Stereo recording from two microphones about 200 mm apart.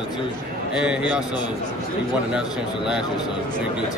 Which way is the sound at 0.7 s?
5° right (ahead or behind).